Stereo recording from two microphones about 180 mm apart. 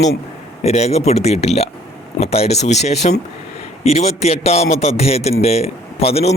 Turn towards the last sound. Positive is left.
turn(degrees=35)  # may be behind; listen again after turning